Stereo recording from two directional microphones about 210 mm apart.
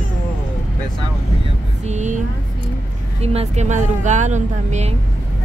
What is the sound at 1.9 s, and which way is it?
Speech, 35° right (ahead or behind).